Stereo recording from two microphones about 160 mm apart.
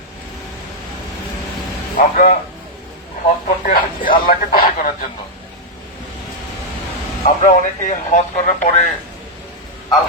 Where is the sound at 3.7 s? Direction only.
65° left (ahead or behind).